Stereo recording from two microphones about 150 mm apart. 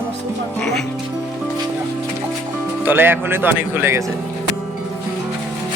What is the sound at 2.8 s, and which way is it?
Speech, 15° right (ahead or behind).